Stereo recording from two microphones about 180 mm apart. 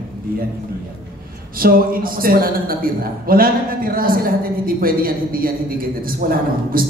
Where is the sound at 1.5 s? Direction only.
55° right (ahead or behind).